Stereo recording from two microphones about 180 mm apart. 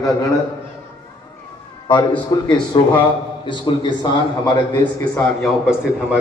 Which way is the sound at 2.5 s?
25° left (ahead or behind).